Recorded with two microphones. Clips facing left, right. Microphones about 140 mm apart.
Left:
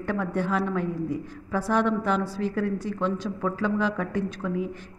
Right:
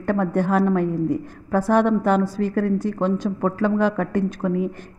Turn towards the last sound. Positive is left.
turn(degrees=-50)  # may be behind; listen again after turning